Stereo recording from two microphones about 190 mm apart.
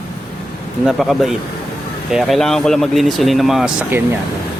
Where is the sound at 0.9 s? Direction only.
Centre (ahead or behind).